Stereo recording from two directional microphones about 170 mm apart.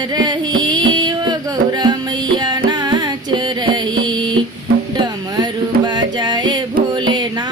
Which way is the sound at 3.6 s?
25° right (ahead or behind).